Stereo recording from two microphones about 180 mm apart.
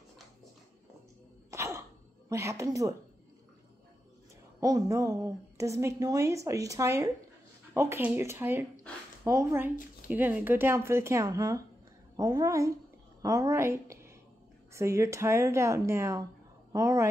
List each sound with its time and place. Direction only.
1.5 s cough: 15° right (ahead or behind)
2.2 s a woman's voice: 15° right (ahead or behind)
4.6 s a woman's voice: 20° right (ahead or behind)